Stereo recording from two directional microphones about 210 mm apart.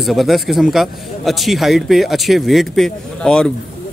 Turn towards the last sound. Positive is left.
turn(degrees=5)  # may be behind; listen again after turning